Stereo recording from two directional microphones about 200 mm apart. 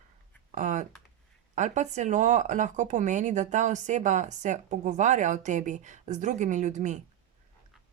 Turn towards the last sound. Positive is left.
turn(degrees=-35)  # may be behind; listen again after turning